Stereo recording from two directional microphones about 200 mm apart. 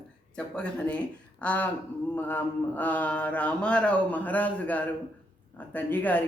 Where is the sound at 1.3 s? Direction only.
5° left (ahead or behind).